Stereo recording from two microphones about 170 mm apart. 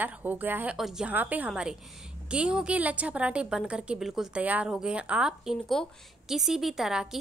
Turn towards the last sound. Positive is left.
turn(degrees=-5)  # may be behind; listen again after turning